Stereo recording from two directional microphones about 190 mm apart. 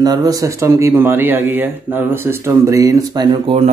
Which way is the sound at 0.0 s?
20° right (ahead or behind).